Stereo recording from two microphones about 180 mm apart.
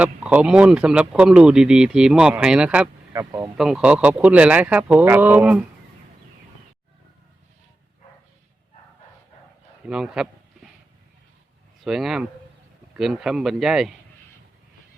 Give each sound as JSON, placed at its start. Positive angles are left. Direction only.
{"t": 0.0, "sound": "speech", "side_deg": -10}
{"t": 3.1, "sound": "speech", "side_deg": -20}
{"t": 3.6, "sound": "speech", "side_deg": -5}
{"t": 9.8, "sound": "speech", "side_deg": -5}
{"t": 11.8, "sound": "speech", "side_deg": 0}